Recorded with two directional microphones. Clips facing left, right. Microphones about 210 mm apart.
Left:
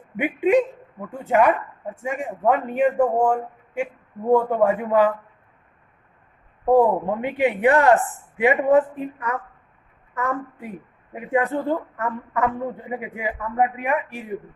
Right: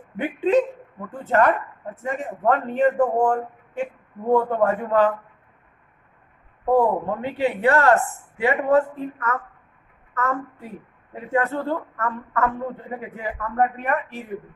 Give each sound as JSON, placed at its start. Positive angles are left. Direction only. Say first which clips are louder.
{"t": 0.2, "sound": "a man's voice", "louder": "left 1 dB", "side_deg": 10}
{"t": 6.6, "sound": "a man's voice", "louder": "left 2 dB", "side_deg": 15}